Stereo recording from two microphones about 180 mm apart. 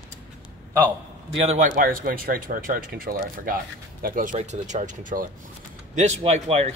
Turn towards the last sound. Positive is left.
turn(degrees=-35)  # may be behind; listen again after turning